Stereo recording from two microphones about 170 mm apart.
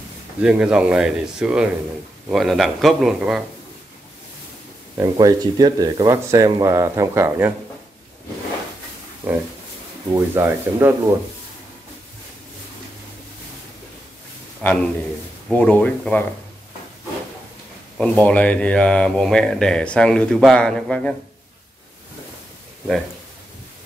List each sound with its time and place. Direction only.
0.4 s speech: 5° right (ahead or behind)
4.9 s speech: 20° right (ahead or behind)
9.2 s speech: 10° right (ahead or behind)
14.6 s a man's voice: 10° left (ahead or behind)
17.9 s speech: 5° left (ahead or behind)